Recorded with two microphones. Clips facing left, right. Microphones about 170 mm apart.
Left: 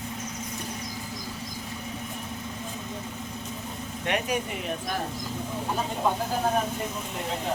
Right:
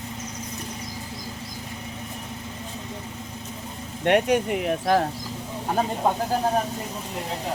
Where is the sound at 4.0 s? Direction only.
65° right (ahead or behind).